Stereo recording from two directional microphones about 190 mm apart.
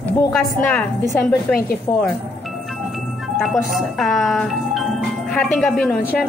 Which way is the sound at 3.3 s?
Centre (ahead or behind).